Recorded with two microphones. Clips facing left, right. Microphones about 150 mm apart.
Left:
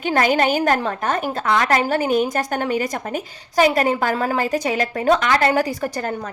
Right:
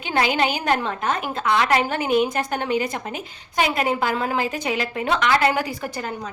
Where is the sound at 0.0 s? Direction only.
45° left (ahead or behind).